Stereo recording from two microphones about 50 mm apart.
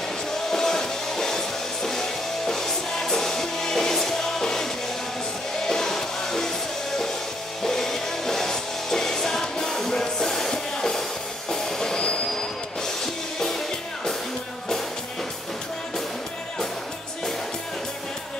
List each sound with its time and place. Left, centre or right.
0.5 s music: centre
5.7 s music: centre
7.6 s music: centre